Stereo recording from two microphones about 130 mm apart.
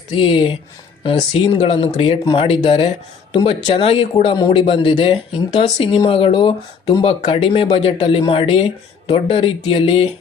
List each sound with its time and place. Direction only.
0.2 s speech: 40° left (ahead or behind)